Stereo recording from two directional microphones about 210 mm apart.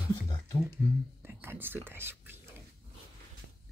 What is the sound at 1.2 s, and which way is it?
Speech, 10° right (ahead or behind).